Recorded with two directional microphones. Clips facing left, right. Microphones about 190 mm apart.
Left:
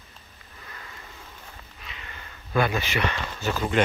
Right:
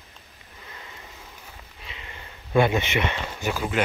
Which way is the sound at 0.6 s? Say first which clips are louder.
Right 1 dB; 20° right (ahead or behind).